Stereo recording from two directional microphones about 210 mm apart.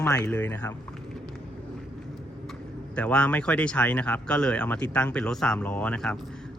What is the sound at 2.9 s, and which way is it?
Speech, 5° left (ahead or behind).